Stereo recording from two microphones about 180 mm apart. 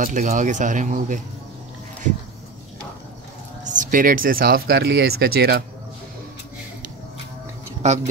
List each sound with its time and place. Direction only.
0.0 s speech: 45° right (ahead or behind)
3.6 s speech: 50° right (ahead or behind)
7.8 s speech: 40° right (ahead or behind)